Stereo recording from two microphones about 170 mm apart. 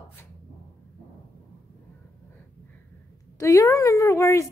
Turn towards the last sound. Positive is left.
turn(degrees=15)  # may be behind; listen again after turning